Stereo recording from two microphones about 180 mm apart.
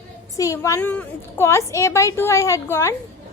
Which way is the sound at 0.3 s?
20° left (ahead or behind).